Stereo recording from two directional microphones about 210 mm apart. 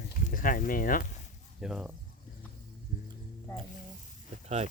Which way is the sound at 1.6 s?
5° right (ahead or behind).